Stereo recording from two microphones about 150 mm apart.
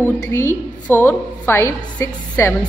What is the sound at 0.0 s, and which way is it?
A woman's voice, 15° left (ahead or behind).